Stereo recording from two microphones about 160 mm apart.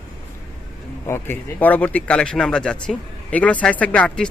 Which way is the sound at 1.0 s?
15° left (ahead or behind).